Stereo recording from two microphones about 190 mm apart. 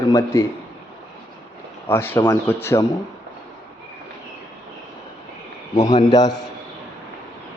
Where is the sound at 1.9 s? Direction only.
10° left (ahead or behind).